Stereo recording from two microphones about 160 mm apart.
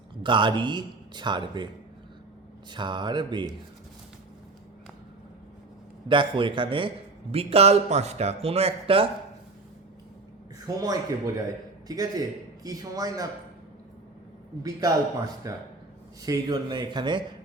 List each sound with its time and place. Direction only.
0.2 s speech: 30° right (ahead or behind)
2.7 s speech: 30° right (ahead or behind)
6.1 s a man's voice: 30° right (ahead or behind)
10.8 s speech: 20° right (ahead or behind)
14.6 s speech: 20° right (ahead or behind)